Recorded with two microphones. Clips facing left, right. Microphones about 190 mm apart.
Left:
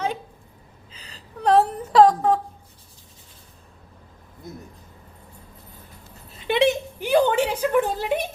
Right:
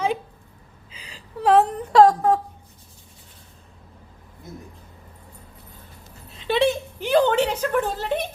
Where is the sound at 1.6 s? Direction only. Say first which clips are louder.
Right 1 dB; centre (ahead or behind).